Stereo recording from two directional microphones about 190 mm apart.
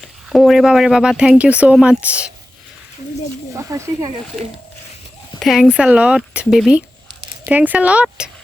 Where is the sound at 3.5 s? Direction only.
15° right (ahead or behind).